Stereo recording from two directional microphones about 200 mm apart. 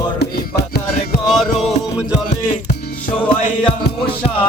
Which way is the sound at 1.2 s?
Centre (ahead or behind).